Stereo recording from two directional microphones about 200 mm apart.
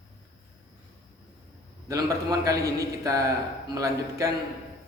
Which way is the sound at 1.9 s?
15° right (ahead or behind).